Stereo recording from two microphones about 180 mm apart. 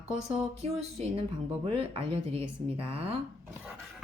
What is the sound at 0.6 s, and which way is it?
Speech, 35° right (ahead or behind).